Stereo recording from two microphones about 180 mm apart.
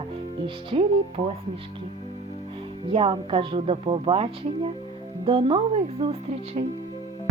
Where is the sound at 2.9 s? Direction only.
30° right (ahead or behind).